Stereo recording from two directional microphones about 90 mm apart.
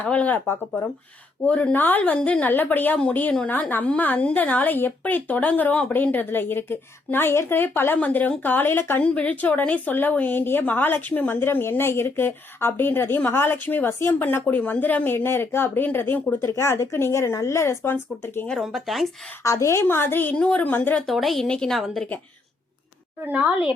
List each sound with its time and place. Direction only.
0.0 s a woman's voice: 15° left (ahead or behind)
18.4 s a woman's voice: centre (ahead or behind)
19.4 s a woman's voice: 35° left (ahead or behind)
21.1 s a woman's voice: centre (ahead or behind)
23.2 s a woman's voice: 15° right (ahead or behind)